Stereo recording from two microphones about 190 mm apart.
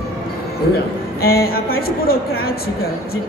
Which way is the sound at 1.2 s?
55° left (ahead or behind).